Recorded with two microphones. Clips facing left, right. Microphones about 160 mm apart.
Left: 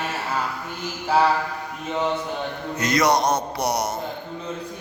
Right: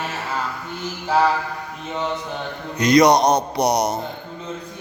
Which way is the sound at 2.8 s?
20° right (ahead or behind).